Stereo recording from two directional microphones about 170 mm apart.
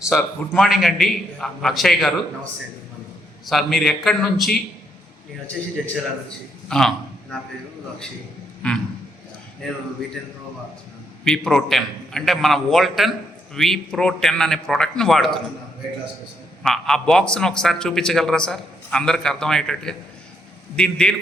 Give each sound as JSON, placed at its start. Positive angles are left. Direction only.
{"t": 0.1, "sound": "a man's voice", "side_deg": 5}
{"t": 3.4, "sound": "a man's voice", "side_deg": 0}
{"t": 5.8, "sound": "a man's voice", "side_deg": 0}
{"t": 6.7, "sound": "a sound", "side_deg": 5}
{"t": 8.6, "sound": "speech", "side_deg": 5}
{"t": 11.3, "sound": "a man's voice", "side_deg": 5}
{"t": 16.6, "sound": "a man's voice", "side_deg": 0}